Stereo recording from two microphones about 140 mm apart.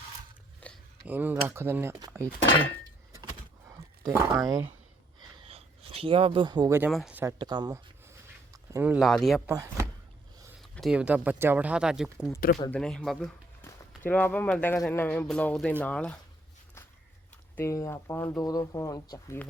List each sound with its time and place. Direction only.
0.6 s a sound: 10° left (ahead or behind)
1.0 s speech: 10° right (ahead or behind)
2.0 s speech: 25° right (ahead or behind)
3.7 s a sound: 25° right (ahead or behind)
5.4 s a sound: 45° right (ahead or behind)
6.7 s speech: 15° right (ahead or behind)
7.3 s speech: 30° right (ahead or behind)
8.7 s speech: 15° right (ahead or behind)
9.0 s speech: centre (ahead or behind)
9.5 s speech: 20° right (ahead or behind)
10.6 s speech: centre (ahead or behind)
12.7 s speech: 5° left (ahead or behind)
17.6 s speech: 20° left (ahead or behind)